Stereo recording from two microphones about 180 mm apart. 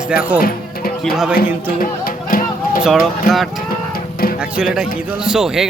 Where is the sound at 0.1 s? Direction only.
5° right (ahead or behind).